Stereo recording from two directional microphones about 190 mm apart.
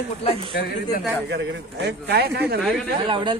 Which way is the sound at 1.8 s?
60° right (ahead or behind).